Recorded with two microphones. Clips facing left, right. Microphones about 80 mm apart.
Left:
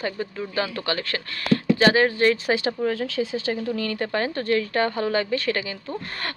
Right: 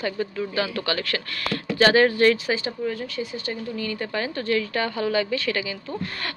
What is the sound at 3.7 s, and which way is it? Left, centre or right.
Speech, left.